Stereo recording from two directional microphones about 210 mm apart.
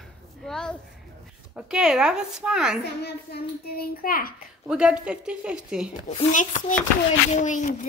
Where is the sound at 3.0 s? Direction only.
45° left (ahead or behind).